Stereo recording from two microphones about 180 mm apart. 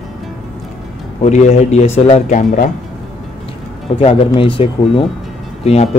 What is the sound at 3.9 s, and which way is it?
Speech, 30° left (ahead or behind).